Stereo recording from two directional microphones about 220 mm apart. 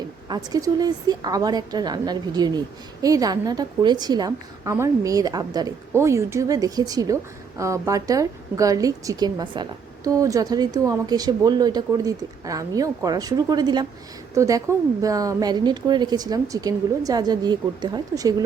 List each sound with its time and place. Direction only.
0.3 s a woman's voice: 15° right (ahead or behind)